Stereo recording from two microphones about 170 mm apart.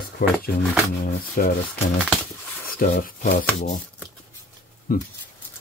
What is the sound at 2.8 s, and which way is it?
Speech, 50° left (ahead or behind).